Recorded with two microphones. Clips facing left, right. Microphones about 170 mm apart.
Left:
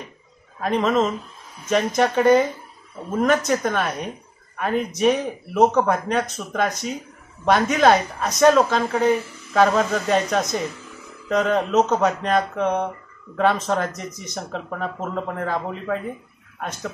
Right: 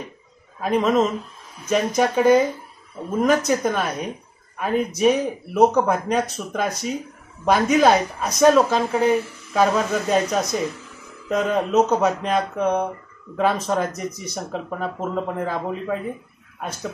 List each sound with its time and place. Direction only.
0.6 s speech: 5° right (ahead or behind)